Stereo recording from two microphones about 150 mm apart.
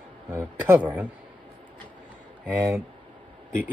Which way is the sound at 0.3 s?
15° right (ahead or behind).